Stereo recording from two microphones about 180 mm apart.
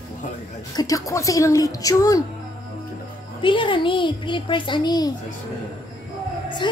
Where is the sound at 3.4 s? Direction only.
30° left (ahead or behind).